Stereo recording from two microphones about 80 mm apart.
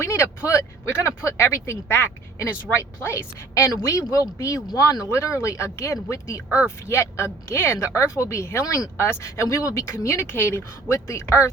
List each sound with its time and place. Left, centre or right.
0.0 s speech: left
4.1 s speech: left
7.9 s speech: left